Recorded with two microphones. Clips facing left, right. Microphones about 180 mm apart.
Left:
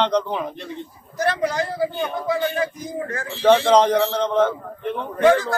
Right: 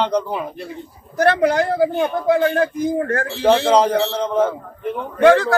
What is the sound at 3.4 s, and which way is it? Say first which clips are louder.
A man's voice: even; 10° right (ahead or behind).